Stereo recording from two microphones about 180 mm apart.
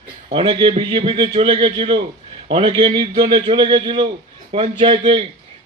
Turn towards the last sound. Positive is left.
turn(degrees=-30)  # may be behind; listen again after turning